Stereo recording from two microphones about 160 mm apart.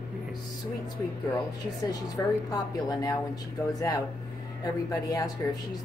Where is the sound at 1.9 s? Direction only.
20° left (ahead or behind).